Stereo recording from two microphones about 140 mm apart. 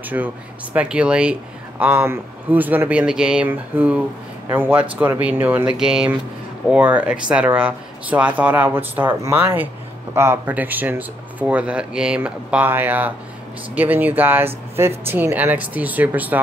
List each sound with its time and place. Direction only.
0.1 s speech: 15° right (ahead or behind)